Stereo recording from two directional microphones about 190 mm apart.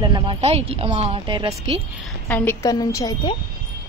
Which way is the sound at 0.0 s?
25° right (ahead or behind).